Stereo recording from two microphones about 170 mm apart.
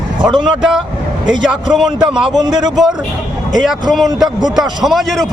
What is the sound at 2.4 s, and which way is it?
Speech, 25° right (ahead or behind).